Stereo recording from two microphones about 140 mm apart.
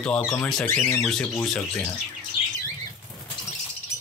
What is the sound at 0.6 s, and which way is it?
Speech, 5° left (ahead or behind).